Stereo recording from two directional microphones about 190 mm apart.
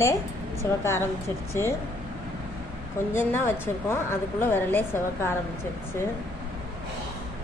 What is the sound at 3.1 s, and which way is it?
A woman's voice, 10° left (ahead or behind).